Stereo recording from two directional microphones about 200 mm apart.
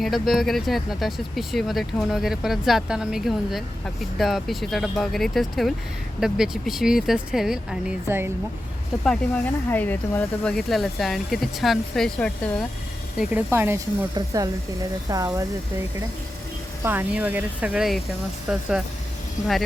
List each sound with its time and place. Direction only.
0.0 s speech: centre (ahead or behind)
9.0 s speech: 5° left (ahead or behind)
13.1 s speech: 10° right (ahead or behind)
16.8 s speech: 10° right (ahead or behind)